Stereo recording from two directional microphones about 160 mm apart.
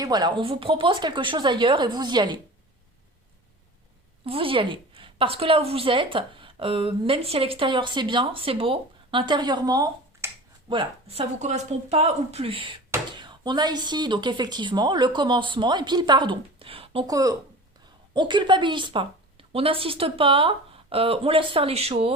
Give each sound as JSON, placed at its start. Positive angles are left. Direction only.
{"t": 0.0, "sound": "speech", "side_deg": -25}
{"t": 4.3, "sound": "a woman's voice", "side_deg": -35}
{"t": 10.7, "sound": "a woman's voice", "side_deg": -35}
{"t": 17.1, "sound": "a woman's voice", "side_deg": -20}